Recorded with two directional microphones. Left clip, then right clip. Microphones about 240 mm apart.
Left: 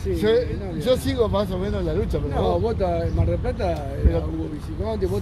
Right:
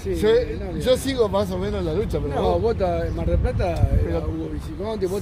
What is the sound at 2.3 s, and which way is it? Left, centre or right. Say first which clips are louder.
A man's voice: right 2 dB; centre.